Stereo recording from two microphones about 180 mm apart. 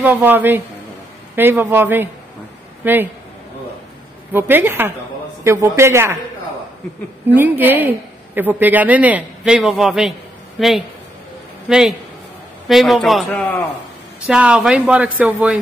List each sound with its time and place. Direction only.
0.0 s a man's voice: 10° right (ahead or behind)
4.3 s a man's voice: 10° right (ahead or behind)
7.2 s a man's voice: 10° right (ahead or behind)